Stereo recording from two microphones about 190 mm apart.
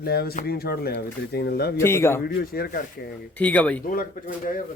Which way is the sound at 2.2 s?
50° left (ahead or behind).